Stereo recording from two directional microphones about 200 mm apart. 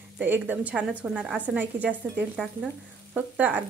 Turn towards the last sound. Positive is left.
turn(degrees=-10)  # may be behind; listen again after turning